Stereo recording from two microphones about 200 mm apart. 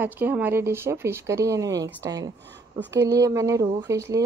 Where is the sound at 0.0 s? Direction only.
10° right (ahead or behind).